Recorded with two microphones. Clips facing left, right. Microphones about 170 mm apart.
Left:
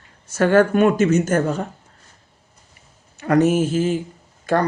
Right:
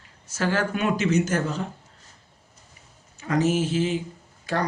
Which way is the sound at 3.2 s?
65° left (ahead or behind).